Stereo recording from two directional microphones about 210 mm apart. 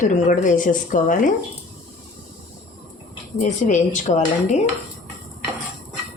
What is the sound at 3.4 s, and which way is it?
Speech, 35° left (ahead or behind).